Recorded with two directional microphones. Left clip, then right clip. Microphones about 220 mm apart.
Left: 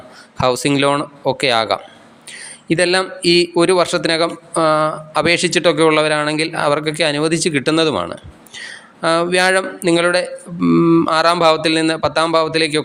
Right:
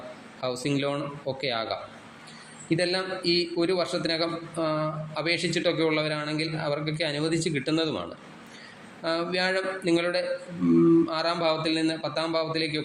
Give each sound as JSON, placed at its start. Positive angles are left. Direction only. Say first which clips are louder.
{"t": 0.3, "sound": "a man's voice", "louder": "left 14 dB", "side_deg": 35}